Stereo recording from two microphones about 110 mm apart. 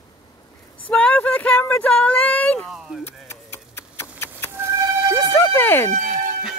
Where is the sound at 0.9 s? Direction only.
10° left (ahead or behind).